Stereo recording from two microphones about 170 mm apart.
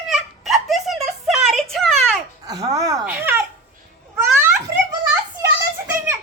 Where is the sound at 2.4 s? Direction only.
20° right (ahead or behind).